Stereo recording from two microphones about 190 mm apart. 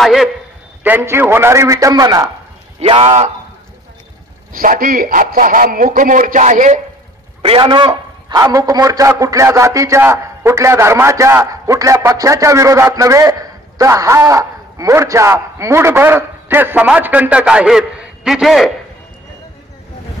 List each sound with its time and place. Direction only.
0.0 s a man's voice: centre (ahead or behind)
0.8 s a man's voice: 10° right (ahead or behind)
2.8 s speech: 30° right (ahead or behind)
4.5 s a man's voice: 45° right (ahead or behind)
7.4 s a man's voice: 25° right (ahead or behind); by 18.7 s centre (ahead or behind)